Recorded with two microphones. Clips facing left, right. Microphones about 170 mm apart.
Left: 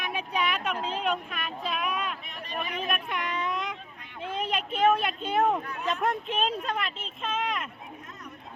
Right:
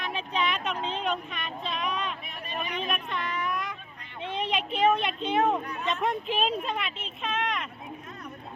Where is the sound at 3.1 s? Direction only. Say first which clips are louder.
Even; 20° left (ahead or behind).